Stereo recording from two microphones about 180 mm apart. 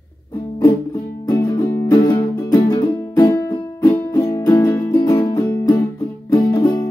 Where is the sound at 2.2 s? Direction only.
30° left (ahead or behind).